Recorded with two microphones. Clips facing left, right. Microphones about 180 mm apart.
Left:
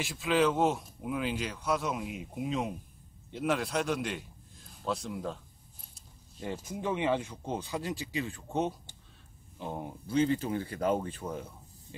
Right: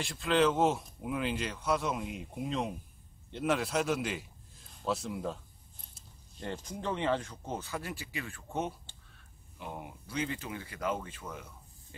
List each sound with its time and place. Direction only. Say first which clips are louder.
0.0 s a man's voice: even; centre (ahead or behind); by 8.9 s 20° left (ahead or behind)
9.6 s speech: left 5 dB; 30° left (ahead or behind)